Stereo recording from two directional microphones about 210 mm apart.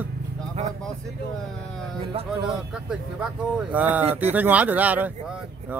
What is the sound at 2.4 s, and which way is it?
A man's voice, 5° right (ahead or behind).